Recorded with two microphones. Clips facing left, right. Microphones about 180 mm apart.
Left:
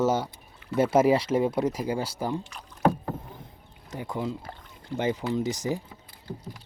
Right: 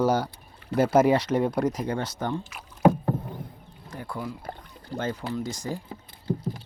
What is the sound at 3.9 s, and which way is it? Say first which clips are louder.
Speech: left 3 dB; 20° left (ahead or behind).